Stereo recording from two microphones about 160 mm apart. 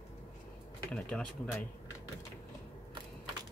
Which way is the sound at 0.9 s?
5° left (ahead or behind).